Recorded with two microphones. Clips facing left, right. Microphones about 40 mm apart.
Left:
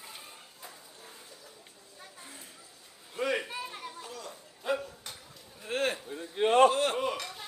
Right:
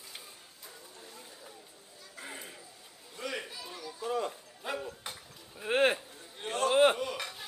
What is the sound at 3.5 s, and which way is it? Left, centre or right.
Children playing, left.